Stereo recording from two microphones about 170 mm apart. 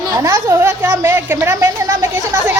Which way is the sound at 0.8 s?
10° right (ahead or behind).